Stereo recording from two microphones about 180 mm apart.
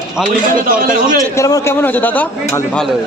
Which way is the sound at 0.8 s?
50° right (ahead or behind).